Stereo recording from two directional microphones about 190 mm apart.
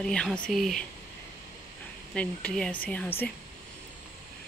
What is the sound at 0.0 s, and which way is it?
Speech, 5° left (ahead or behind).